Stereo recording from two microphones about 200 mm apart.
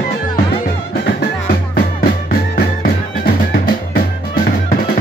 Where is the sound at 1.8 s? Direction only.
50° left (ahead or behind).